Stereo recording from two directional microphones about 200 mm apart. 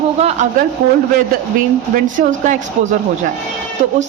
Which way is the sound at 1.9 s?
40° right (ahead or behind).